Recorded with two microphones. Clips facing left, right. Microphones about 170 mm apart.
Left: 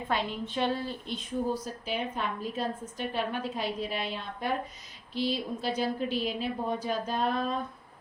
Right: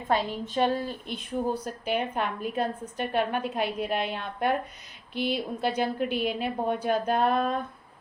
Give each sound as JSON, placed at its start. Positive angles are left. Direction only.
{"t": 0.1, "sound": "a woman's voice", "side_deg": -40}